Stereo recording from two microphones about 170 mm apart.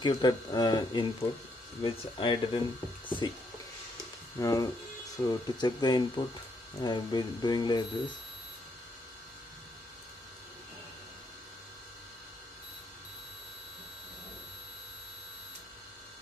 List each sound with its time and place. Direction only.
0.0 s speech: 25° left (ahead or behind)
4.4 s speech: 20° left (ahead or behind)